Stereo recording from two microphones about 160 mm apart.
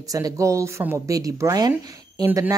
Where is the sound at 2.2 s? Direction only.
15° right (ahead or behind).